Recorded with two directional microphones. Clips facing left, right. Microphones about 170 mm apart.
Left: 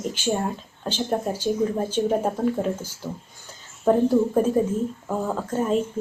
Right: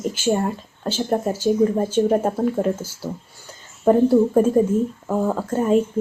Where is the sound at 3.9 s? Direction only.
10° right (ahead or behind).